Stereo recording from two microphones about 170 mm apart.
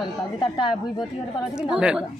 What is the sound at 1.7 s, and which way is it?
Speech, 5° right (ahead or behind).